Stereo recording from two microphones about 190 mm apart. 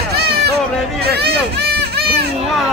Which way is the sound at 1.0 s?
60° right (ahead or behind).